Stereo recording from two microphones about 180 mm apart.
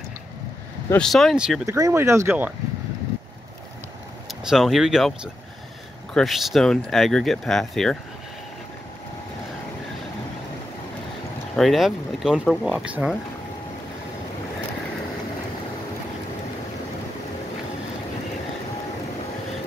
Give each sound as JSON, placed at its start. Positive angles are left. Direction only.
{"t": 0.8, "sound": "speech", "side_deg": 5}
{"t": 1.7, "sound": "speech", "side_deg": -15}
{"t": 4.3, "sound": "speech", "side_deg": 0}
{"t": 11.5, "sound": "speech", "side_deg": 0}